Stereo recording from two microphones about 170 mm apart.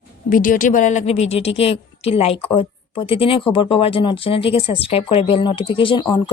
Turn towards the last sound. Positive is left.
turn(degrees=30)  # may be behind; listen again after turning